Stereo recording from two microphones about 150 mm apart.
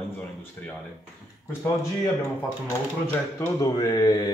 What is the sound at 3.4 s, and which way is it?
Speech, 25° left (ahead or behind).